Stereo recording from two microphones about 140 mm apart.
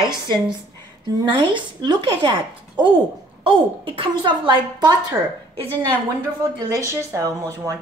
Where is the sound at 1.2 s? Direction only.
35° right (ahead or behind).